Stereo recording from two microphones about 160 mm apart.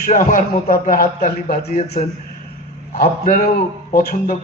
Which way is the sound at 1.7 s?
45° left (ahead or behind).